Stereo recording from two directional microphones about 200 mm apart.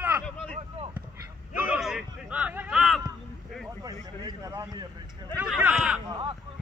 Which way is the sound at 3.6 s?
15° right (ahead or behind).